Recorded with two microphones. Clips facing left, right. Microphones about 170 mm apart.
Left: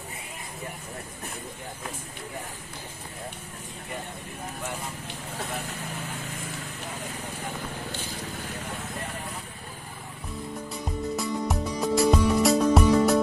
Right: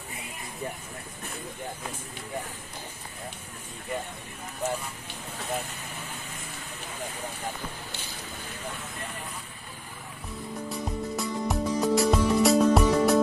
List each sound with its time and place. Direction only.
10.7 s music: centre (ahead or behind)